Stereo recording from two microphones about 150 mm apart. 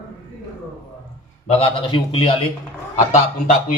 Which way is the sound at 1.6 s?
35° left (ahead or behind).